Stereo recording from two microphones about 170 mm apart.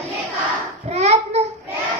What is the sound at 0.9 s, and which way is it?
Child singing, 40° right (ahead or behind).